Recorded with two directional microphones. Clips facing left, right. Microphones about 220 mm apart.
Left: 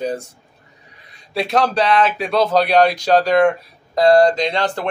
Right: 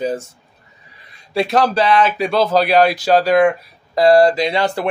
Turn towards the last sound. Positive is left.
turn(degrees=-10)  # may be behind; listen again after turning